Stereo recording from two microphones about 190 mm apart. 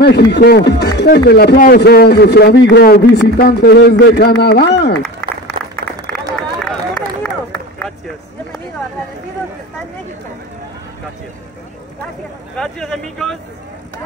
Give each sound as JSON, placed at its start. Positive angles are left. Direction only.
{"t": 0.0, "sound": "a man's voice", "side_deg": 60}
{"t": 5.5, "sound": "applause", "side_deg": -25}
{"t": 12.5, "sound": "speech", "side_deg": 5}